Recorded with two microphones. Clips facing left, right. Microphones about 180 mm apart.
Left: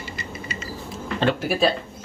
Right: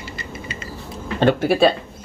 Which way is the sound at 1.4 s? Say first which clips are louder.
Right 6 dB; 70° right (ahead or behind).